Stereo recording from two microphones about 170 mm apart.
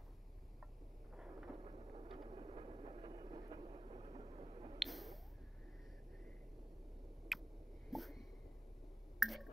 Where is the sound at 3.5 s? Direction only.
35° right (ahead or behind).